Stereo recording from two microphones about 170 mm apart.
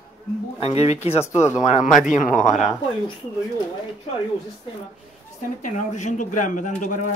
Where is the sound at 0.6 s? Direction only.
40° left (ahead or behind).